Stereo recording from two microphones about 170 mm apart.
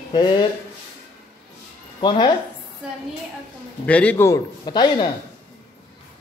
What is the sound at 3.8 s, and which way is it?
A man's voice, 10° left (ahead or behind).